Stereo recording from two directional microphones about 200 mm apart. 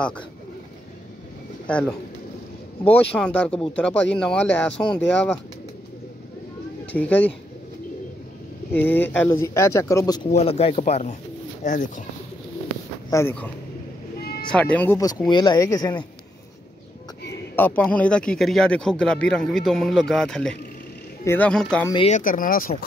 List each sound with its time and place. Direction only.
1.7 s speech: 5° left (ahead or behind)
6.9 s speech: 10° left (ahead or behind)
8.7 s speech: 10° left (ahead or behind)
10.3 s speech: 30° left (ahead or behind)
13.1 s speech: 10° left (ahead or behind)
14.5 s speech: 5° left (ahead or behind)
17.6 s speech: 10° left (ahead or behind)
22.0 s speech: 40° left (ahead or behind)